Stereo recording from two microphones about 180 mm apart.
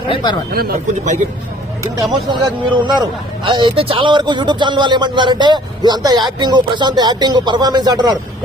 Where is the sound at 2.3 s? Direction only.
25° right (ahead or behind).